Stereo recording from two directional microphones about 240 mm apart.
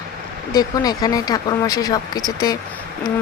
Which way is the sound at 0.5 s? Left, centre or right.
Centre.